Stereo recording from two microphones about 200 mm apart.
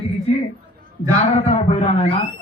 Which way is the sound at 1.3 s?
35° left (ahead or behind).